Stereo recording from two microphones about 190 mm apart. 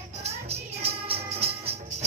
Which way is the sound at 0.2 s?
30° right (ahead or behind).